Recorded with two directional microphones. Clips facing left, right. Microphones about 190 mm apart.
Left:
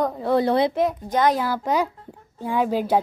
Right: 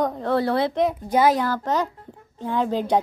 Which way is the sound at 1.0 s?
10° right (ahead or behind).